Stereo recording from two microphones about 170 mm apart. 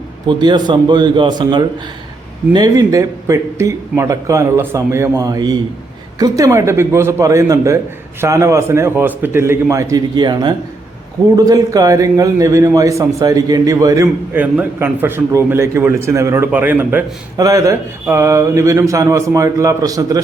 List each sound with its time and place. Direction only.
0.3 s a man's voice: 25° right (ahead or behind)